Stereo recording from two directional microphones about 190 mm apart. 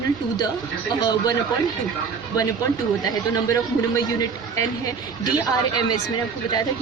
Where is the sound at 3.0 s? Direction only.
20° left (ahead or behind).